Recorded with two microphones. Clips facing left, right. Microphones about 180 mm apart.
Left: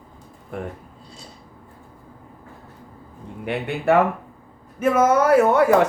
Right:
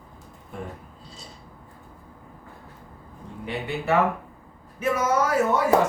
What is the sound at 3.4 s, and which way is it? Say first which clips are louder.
Speech: left 4 dB; 60° left (ahead or behind).